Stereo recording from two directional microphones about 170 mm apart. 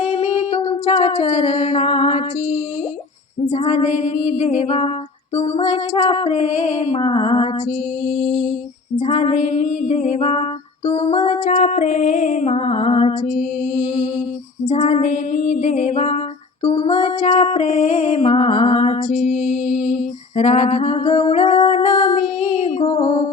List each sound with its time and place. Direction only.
0.0 s a sound: 40° left (ahead or behind)
3.5 s female singing: 40° left (ahead or behind)
5.3 s music: 40° left (ahead or behind)
8.3 s female singing: 45° left (ahead or behind)
9.0 s music: 40° left (ahead or behind)
14.7 s female singing: 45° left (ahead or behind)
16.6 s music: 35° left (ahead or behind)